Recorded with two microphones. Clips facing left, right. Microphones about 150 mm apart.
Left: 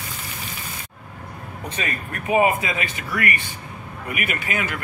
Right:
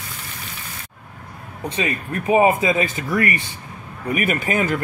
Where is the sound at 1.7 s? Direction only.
25° right (ahead or behind).